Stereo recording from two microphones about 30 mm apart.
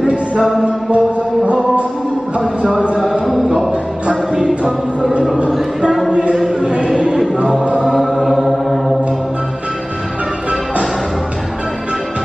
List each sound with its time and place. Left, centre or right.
0.7 s music: right
7.9 s chant: centre